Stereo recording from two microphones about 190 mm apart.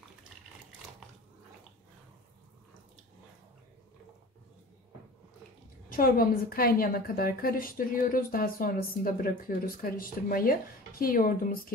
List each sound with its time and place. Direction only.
5.9 s a woman's voice: 50° left (ahead or behind)